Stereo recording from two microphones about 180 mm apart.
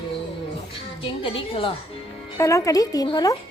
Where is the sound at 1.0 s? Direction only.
30° left (ahead or behind).